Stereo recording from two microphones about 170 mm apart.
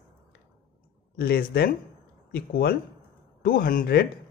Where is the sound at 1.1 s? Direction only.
65° left (ahead or behind).